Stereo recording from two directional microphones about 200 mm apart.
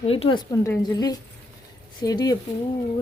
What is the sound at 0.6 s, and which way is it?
Speech, 15° left (ahead or behind).